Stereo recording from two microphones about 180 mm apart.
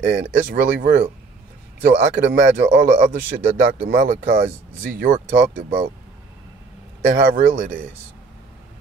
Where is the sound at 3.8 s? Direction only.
55° right (ahead or behind).